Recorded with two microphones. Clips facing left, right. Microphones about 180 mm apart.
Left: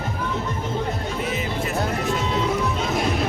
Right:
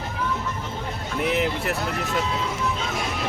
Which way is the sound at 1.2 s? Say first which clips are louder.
Right 6 dB; 70° right (ahead or behind).